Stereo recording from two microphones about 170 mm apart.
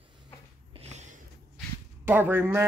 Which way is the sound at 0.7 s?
45° right (ahead or behind).